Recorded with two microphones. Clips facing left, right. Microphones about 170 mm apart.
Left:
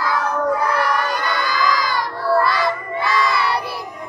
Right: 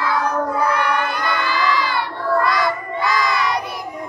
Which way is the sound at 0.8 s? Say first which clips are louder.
Even; 40° left (ahead or behind).